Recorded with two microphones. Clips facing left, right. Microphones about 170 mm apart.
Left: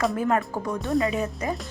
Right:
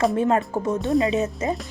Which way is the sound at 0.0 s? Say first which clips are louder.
Right 4 dB; 25° right (ahead or behind).